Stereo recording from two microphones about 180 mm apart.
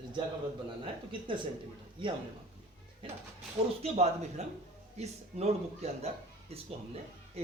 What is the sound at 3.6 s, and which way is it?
Speech, 30° right (ahead or behind).